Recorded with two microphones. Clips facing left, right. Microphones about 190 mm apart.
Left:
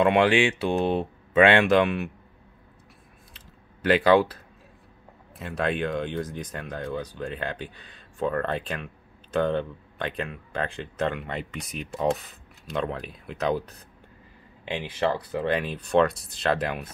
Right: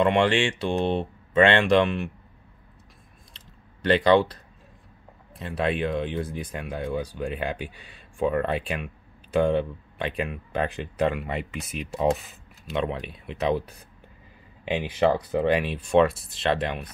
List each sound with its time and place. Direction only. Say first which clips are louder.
0.0 s speech: left 1 dB; 5° left (ahead or behind)
3.3 s typing: left 1 dB; 5° left (ahead or behind)
5.3 s speech: right 1 dB; centre (ahead or behind)
14.6 s speech: right 4 dB; 15° right (ahead or behind)
15.6 s speech: right 2 dB; 5° right (ahead or behind)